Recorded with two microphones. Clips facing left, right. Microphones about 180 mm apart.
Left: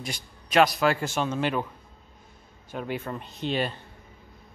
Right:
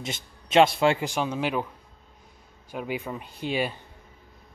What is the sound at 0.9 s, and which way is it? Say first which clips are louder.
Speech: even; 10° right (ahead or behind).